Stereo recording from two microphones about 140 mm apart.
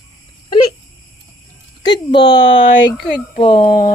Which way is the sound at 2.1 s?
35° left (ahead or behind).